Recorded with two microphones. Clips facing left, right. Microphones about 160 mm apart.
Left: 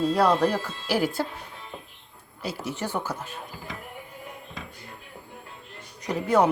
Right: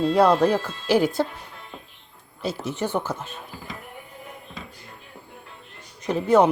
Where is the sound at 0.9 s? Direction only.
20° right (ahead or behind).